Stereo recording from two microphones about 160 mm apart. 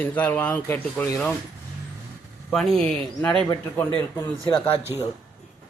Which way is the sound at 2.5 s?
Centre (ahead or behind).